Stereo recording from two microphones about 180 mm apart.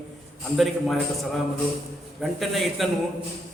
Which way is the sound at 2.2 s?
Centre (ahead or behind).